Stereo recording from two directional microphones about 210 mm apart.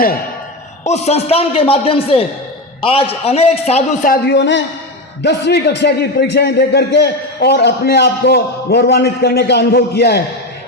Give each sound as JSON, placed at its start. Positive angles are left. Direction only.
{"t": 0.9, "sound": "a man's voice", "side_deg": 30}